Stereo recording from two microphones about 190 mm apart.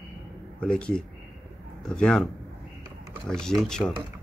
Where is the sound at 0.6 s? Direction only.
5° left (ahead or behind).